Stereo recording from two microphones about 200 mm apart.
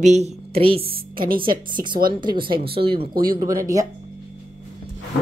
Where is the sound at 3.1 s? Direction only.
45° right (ahead or behind).